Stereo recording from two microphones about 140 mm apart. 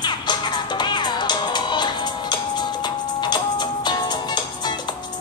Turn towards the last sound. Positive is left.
turn(degrees=30)  # may be behind; listen again after turning